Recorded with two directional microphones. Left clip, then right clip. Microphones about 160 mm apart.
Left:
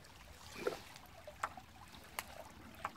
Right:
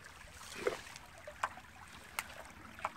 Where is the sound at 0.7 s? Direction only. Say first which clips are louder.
Right 3 dB; 5° left (ahead or behind).